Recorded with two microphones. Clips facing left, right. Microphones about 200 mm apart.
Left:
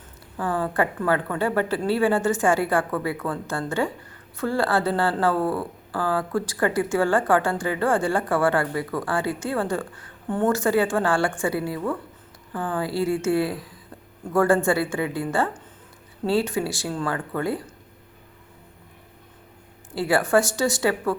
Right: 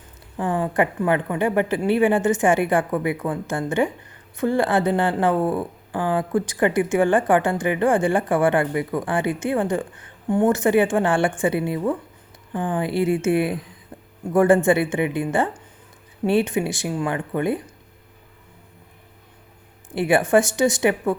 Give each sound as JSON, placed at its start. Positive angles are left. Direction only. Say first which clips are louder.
{"t": 0.3, "sound": "a woman's voice", "louder": "right 3 dB", "side_deg": -20}
{"t": 19.9, "sound": "speech", "louder": "right 3 dB", "side_deg": -20}